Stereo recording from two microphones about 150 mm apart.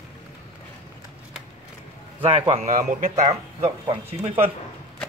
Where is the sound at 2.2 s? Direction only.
40° right (ahead or behind).